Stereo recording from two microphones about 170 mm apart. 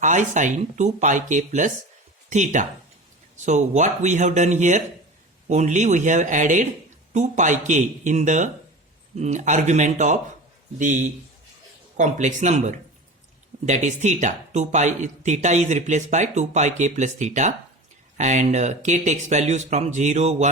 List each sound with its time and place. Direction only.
0.0 s speech: 45° right (ahead or behind)